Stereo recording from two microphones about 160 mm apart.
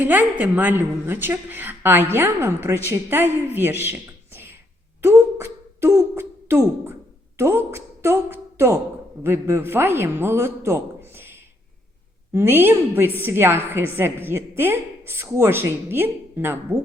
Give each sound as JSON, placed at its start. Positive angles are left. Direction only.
{"t": 0.0, "sound": "speech", "side_deg": -10}
{"t": 5.0, "sound": "a woman's voice", "side_deg": -15}
{"t": 12.3, "sound": "speech", "side_deg": -15}